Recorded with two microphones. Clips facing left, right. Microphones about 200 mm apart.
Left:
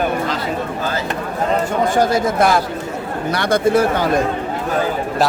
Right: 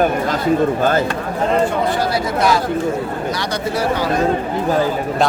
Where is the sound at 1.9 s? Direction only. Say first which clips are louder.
Left 3 dB; 45° left (ahead or behind).